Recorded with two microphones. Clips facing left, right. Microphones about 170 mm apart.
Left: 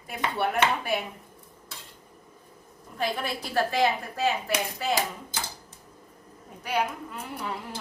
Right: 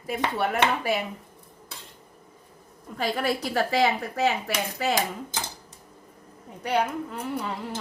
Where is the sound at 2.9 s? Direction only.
65° right (ahead or behind).